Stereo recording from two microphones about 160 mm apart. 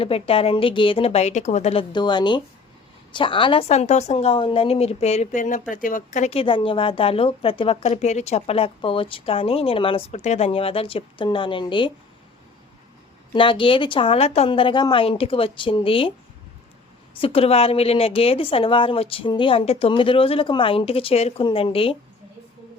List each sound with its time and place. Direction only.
0.0 s a woman's voice: 35° left (ahead or behind)
1.9 s a woman's voice: 30° left (ahead or behind); by 6.4 s 50° left (ahead or behind)
6.4 s a woman's voice: 30° left (ahead or behind)
13.3 s a woman's voice: 30° left (ahead or behind)
17.2 s a woman's voice: 35° left (ahead or behind)